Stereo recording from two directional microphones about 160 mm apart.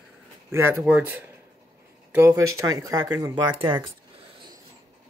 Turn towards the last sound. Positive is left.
turn(degrees=-30)  # may be behind; listen again after turning